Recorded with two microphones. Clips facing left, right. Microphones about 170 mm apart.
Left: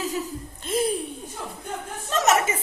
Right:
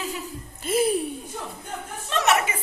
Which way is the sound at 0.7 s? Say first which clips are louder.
Right 2 dB; 5° right (ahead or behind).